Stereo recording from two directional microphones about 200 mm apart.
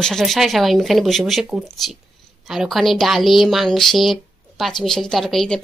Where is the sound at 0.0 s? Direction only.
Centre (ahead or behind).